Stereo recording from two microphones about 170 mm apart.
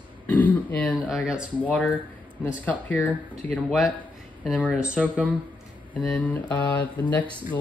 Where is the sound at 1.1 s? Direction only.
5° right (ahead or behind).